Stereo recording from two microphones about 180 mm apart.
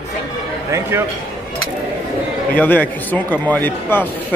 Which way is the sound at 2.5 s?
10° left (ahead or behind).